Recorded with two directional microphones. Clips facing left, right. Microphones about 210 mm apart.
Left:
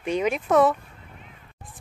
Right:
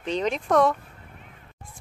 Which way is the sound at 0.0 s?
10° left (ahead or behind).